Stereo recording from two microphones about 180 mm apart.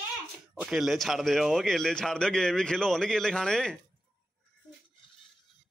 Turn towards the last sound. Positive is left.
turn(degrees=5)  # may be behind; listen again after turning